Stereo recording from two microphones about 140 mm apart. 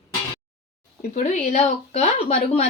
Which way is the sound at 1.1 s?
55° left (ahead or behind).